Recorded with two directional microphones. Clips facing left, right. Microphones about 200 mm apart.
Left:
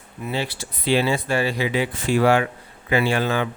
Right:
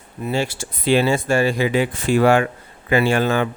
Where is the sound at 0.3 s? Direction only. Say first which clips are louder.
Right 4 dB; 45° right (ahead or behind).